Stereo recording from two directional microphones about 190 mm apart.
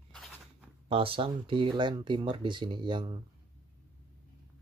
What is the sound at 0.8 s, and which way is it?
Speech, 30° right (ahead or behind).